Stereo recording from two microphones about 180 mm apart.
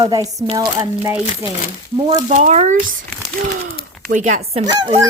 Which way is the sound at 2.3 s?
40° right (ahead or behind).